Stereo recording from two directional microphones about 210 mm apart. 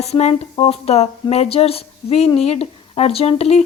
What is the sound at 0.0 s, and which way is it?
Speech, 30° left (ahead or behind).